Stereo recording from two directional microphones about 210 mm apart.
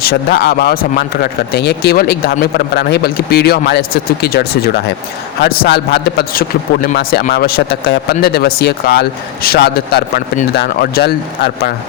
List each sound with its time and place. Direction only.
0.0 s a man's voice: 45° left (ahead or behind)